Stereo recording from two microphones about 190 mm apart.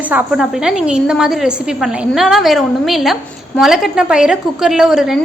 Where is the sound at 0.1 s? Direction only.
5° right (ahead or behind).